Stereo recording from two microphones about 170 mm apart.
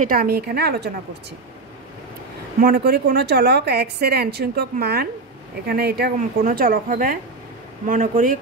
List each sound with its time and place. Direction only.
0.0 s speech: 55° right (ahead or behind); by 0.9 s 70° right (ahead or behind)
2.6 s a woman's voice: 65° right (ahead or behind)
6.1 s speech: 50° right (ahead or behind)